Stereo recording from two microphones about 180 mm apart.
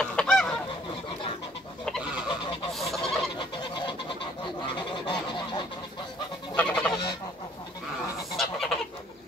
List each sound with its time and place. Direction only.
0.0 s goose: 5° left (ahead or behind)
2.7 s fowl: centre (ahead or behind)
3.3 s fowl: 25° left (ahead or behind)
4.7 s goose: 25° left (ahead or behind)
6.5 s goose: 10° left (ahead or behind)
8.4 s goose: centre (ahead or behind)